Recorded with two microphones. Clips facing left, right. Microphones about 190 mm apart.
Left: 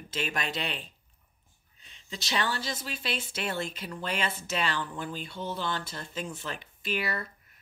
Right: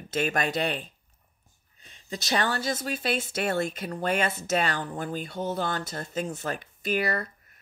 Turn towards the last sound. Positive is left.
turn(degrees=-45)  # may be behind; listen again after turning